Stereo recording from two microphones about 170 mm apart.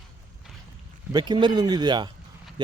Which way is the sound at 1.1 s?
25° right (ahead or behind).